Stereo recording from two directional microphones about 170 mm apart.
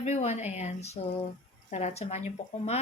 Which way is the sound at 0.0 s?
40° left (ahead or behind).